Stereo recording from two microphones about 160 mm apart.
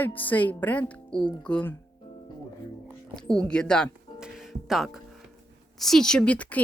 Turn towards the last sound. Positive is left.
turn(degrees=10)  # may be behind; listen again after turning